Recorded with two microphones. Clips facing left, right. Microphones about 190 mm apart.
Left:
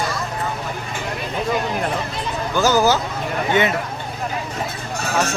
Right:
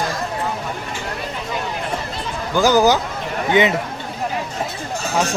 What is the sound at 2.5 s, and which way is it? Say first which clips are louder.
Speech: right 2 dB; 15° right (ahead or behind).